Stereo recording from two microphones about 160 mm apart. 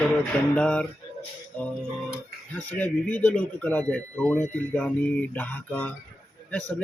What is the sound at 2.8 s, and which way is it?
Speech, 10° left (ahead or behind).